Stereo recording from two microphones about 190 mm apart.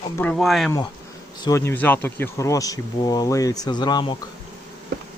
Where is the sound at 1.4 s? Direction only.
15° left (ahead or behind).